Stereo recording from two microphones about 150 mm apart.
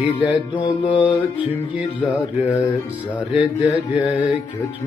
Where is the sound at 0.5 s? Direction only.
35° left (ahead or behind).